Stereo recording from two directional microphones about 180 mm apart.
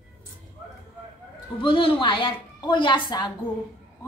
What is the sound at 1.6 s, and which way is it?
A woman's voice, 30° left (ahead or behind).